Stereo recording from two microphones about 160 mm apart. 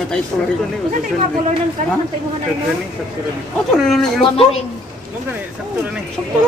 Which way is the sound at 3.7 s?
Centre (ahead or behind).